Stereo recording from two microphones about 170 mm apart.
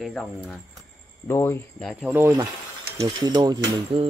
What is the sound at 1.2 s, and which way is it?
Speech, 15° left (ahead or behind).